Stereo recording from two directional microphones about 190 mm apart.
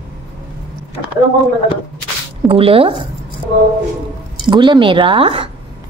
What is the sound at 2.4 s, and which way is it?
Speech, 30° right (ahead or behind).